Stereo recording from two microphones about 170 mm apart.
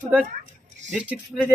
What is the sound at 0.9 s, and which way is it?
Speech, 5° right (ahead or behind).